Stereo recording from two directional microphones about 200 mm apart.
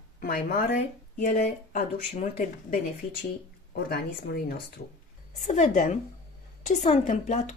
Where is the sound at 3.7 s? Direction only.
50° left (ahead or behind).